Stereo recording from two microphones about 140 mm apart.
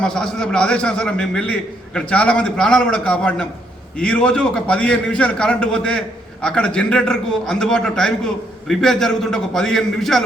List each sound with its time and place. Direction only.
0.0 s a man's voice: 5° left (ahead or behind)